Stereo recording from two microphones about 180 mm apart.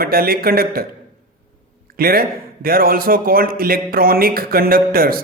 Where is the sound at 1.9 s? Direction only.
55° right (ahead or behind).